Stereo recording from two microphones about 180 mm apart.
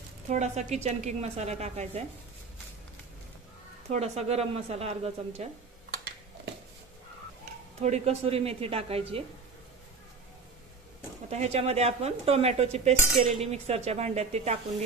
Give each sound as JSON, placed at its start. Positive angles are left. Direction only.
{"t": 0.3, "sound": "a woman's voice", "side_deg": -40}
{"t": 3.9, "sound": "a woman's voice", "side_deg": -35}
{"t": 7.8, "sound": "a woman's voice", "side_deg": -35}
{"t": 11.2, "sound": "a woman's voice", "side_deg": -35}